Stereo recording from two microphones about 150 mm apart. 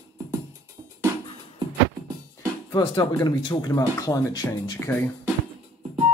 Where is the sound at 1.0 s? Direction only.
15° right (ahead or behind).